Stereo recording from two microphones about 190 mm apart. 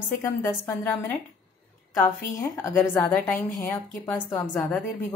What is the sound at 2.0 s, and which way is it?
A woman's voice, 15° left (ahead or behind).